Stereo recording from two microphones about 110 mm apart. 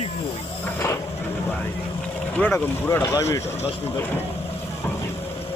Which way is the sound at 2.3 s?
15° left (ahead or behind).